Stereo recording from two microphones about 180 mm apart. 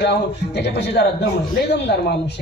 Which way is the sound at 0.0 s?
70° left (ahead or behind).